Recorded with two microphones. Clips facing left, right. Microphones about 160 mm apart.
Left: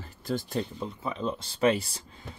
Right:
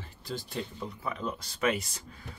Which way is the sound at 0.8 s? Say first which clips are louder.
Left 3 dB; 25° left (ahead or behind).